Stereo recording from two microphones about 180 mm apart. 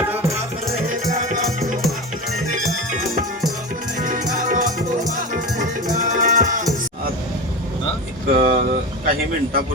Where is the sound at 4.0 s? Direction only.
45° right (ahead or behind).